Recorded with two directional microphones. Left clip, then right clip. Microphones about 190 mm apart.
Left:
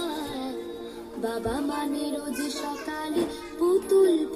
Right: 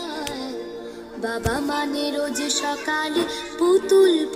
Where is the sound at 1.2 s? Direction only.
30° right (ahead or behind).